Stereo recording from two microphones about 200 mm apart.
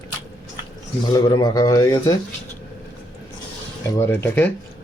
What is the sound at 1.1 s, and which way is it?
Speech, 20° left (ahead or behind).